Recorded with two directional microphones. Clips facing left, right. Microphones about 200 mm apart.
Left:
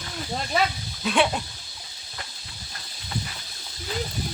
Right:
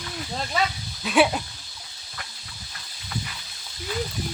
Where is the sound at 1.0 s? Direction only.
5° right (ahead or behind).